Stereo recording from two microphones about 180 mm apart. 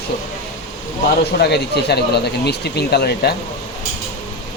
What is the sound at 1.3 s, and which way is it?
Speech, 65° left (ahead or behind).